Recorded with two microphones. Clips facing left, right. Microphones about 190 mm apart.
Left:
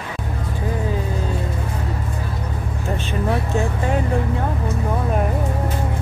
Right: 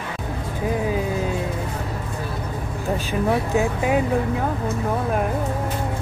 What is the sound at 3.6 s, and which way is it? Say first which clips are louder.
Speech: right 1 dB; 10° right (ahead or behind).